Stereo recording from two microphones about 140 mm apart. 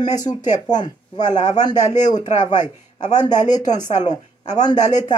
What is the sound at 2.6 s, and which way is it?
Speech, 60° left (ahead or behind).